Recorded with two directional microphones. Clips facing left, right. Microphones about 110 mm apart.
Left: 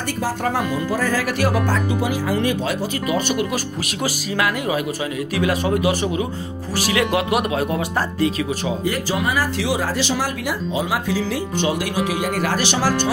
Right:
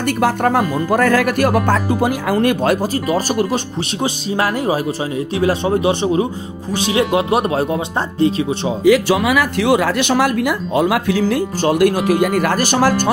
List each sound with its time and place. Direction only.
0.2 s speech: 55° right (ahead or behind)
3.1 s speech: 35° right (ahead or behind)
5.3 s speech: 30° right (ahead or behind)
8.8 s speech: 90° right; by 13.1 s 50° right (ahead or behind)